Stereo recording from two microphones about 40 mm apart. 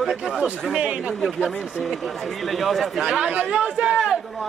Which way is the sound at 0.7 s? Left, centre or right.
Right.